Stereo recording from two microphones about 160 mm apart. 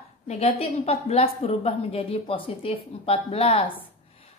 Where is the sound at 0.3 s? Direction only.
40° left (ahead or behind).